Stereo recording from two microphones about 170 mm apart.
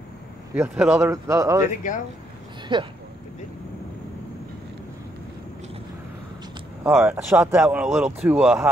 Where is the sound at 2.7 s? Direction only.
30° right (ahead or behind).